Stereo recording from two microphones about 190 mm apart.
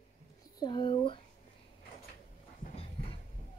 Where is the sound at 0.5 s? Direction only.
25° left (ahead or behind).